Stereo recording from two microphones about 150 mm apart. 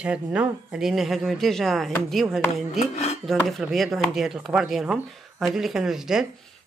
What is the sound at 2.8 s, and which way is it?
Dishes, 50° left (ahead or behind).